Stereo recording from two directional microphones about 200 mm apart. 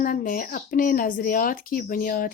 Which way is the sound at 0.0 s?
45° left (ahead or behind).